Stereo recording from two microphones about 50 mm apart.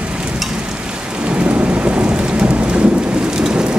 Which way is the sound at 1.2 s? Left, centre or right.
Right.